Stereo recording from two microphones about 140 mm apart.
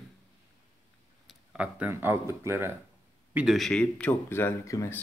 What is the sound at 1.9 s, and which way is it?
Speech, 20° right (ahead or behind).